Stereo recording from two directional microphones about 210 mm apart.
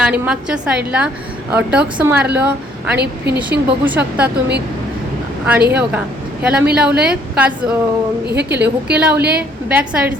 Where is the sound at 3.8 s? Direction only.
5° right (ahead or behind).